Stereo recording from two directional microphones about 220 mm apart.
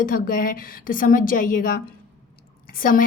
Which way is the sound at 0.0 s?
40° left (ahead or behind).